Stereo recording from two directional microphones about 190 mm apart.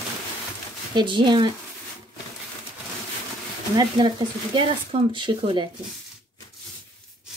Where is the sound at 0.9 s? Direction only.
25° right (ahead or behind).